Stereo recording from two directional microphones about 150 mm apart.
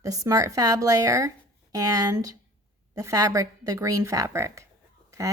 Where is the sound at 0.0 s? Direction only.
20° right (ahead or behind).